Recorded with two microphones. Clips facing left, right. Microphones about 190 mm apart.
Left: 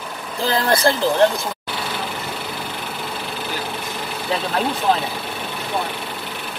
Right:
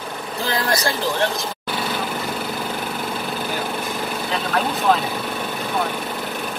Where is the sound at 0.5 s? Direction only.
30° left (ahead or behind).